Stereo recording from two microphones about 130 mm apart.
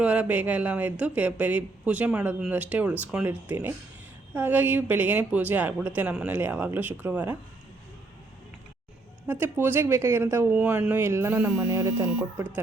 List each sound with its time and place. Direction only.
0.0 s speech: 10° right (ahead or behind)
9.2 s speech: 15° right (ahead or behind)
11.7 s speech: 20° right (ahead or behind)